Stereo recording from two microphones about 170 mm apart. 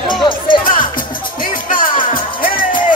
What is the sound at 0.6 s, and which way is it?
Music, 55° left (ahead or behind).